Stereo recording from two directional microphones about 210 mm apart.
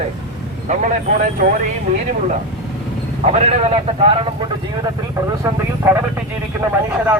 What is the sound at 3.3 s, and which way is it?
A man's voice, 30° right (ahead or behind).